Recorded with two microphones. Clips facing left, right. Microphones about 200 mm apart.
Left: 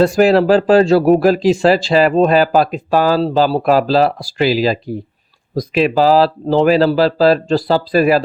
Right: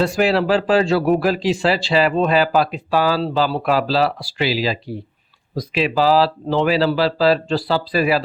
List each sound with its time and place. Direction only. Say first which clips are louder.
0.0 s speech: left 6 dB; 45° left (ahead or behind)